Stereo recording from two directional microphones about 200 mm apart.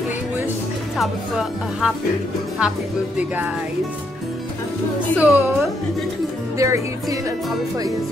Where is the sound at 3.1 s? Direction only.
10° right (ahead or behind).